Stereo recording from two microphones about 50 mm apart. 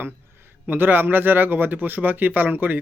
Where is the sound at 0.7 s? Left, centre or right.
Right.